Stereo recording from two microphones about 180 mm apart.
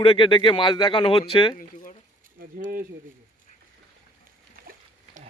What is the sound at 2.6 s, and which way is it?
Speech, 50° right (ahead or behind).